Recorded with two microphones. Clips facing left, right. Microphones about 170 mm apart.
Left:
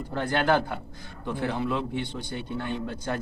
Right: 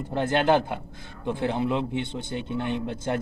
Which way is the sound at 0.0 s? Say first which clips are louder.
Right 3 dB; 20° right (ahead or behind).